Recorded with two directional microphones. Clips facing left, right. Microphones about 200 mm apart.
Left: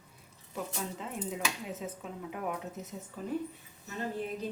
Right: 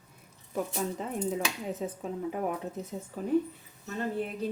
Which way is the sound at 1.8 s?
35° right (ahead or behind).